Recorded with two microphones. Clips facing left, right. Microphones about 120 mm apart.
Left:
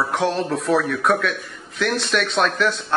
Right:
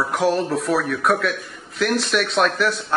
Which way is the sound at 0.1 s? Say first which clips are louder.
Right 2 dB; 5° right (ahead or behind).